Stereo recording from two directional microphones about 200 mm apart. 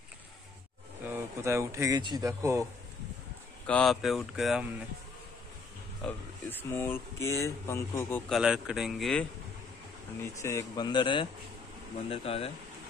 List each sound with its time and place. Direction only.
1.0 s speech: 10° right (ahead or behind)
3.6 s speech: 5° left (ahead or behind)
6.0 s speech: 10° left (ahead or behind)
8.3 s speech: 5° right (ahead or behind)
10.4 s a man's voice: 15° left (ahead or behind)